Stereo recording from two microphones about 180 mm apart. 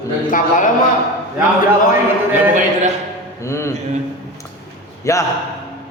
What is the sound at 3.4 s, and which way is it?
Sheep, 15° left (ahead or behind).